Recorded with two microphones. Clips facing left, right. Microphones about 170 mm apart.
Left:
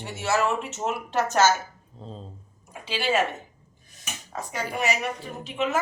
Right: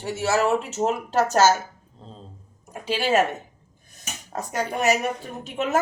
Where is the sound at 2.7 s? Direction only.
45° right (ahead or behind).